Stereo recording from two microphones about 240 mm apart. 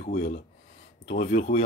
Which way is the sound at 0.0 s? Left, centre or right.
Left.